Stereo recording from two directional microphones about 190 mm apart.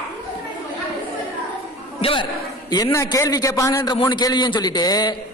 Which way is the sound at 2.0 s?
30° left (ahead or behind).